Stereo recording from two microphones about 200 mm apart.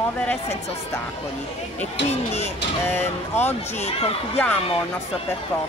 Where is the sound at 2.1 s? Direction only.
30° left (ahead or behind).